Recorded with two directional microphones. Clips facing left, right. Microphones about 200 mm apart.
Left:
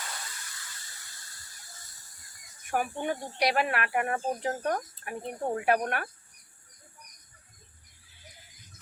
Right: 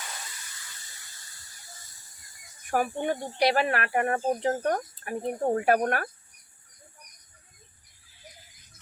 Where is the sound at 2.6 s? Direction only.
40° right (ahead or behind).